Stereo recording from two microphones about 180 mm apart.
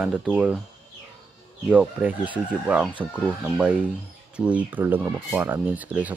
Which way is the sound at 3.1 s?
5° right (ahead or behind).